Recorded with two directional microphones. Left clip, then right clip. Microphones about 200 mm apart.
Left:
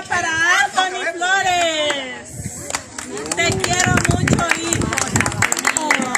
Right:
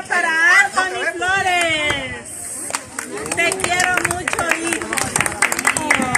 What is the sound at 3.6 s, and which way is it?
Run, 50° left (ahead or behind).